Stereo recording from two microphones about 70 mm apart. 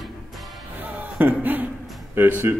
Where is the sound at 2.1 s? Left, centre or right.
Right.